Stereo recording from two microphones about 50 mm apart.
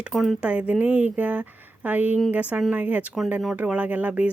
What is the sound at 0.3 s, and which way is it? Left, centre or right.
Speech, right.